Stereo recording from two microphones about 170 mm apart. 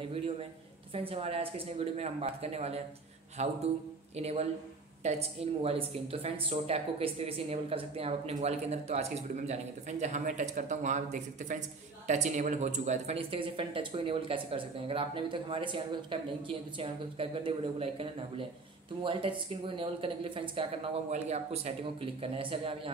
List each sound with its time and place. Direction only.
0.9 s a woman's voice: 35° right (ahead or behind)
19.0 s a woman's voice: 30° right (ahead or behind)